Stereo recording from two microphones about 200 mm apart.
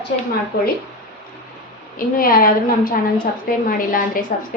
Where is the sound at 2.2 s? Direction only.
45° left (ahead or behind).